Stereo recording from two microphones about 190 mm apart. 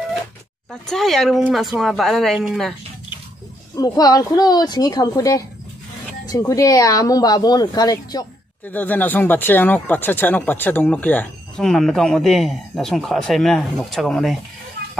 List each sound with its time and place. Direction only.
0.7 s speech: centre (ahead or behind)
3.7 s speech: 20° left (ahead or behind)
8.6 s speech: 10° left (ahead or behind)